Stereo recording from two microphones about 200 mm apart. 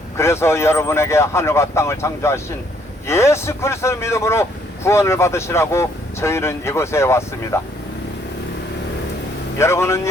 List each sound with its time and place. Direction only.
0.2 s speech: 15° left (ahead or behind)
9.6 s speech: 15° left (ahead or behind)